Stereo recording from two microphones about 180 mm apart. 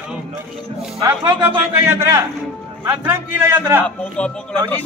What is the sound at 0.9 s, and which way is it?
Speech, 25° right (ahead or behind).